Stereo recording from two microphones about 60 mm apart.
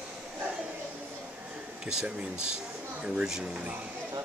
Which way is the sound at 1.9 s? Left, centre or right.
Centre.